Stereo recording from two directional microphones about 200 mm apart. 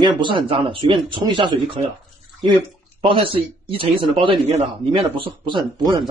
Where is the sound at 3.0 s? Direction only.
25° right (ahead or behind).